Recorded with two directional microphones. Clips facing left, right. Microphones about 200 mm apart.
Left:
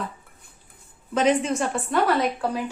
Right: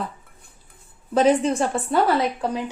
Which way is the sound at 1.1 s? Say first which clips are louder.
Right 3 dB; 35° right (ahead or behind).